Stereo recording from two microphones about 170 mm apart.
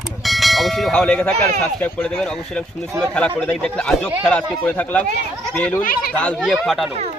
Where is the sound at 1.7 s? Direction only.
10° left (ahead or behind).